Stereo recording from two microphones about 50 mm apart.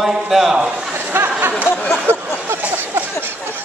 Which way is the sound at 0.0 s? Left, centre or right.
Centre.